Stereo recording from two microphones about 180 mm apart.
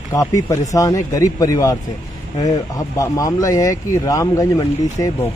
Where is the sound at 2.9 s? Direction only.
20° left (ahead or behind).